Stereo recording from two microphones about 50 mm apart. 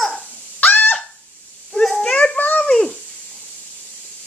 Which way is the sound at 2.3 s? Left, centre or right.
Left.